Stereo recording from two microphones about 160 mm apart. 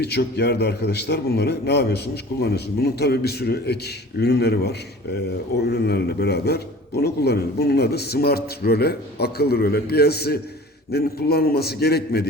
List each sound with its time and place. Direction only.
0.0 s a man's voice: 90° left